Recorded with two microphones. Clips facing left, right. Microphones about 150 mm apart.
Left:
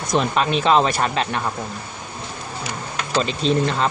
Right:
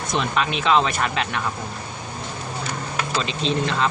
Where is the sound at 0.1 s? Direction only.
40° left (ahead or behind).